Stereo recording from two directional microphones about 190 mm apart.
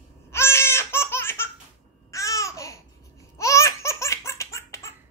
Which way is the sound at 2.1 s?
15° left (ahead or behind).